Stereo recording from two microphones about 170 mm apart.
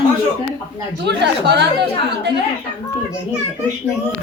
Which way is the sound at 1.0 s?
85° right.